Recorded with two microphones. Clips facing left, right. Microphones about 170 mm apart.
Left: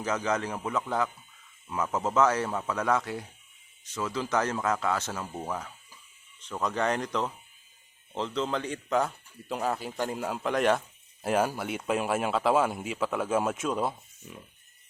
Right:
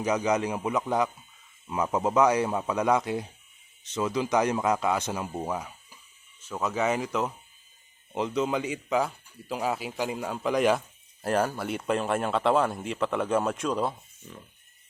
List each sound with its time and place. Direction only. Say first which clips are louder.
0.0 s speech: right 4 dB; 15° right (ahead or behind); by 14.3 s centre (ahead or behind)